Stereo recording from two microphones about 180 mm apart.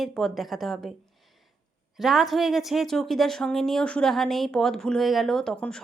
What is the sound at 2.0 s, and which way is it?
A woman's voice, centre (ahead or behind).